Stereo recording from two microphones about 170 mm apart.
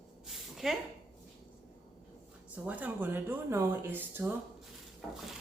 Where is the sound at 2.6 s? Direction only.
10° right (ahead or behind).